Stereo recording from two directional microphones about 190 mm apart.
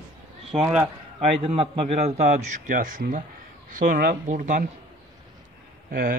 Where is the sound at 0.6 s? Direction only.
5° right (ahead or behind).